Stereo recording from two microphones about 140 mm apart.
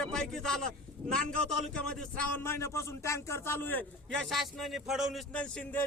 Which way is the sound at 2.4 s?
20° left (ahead or behind).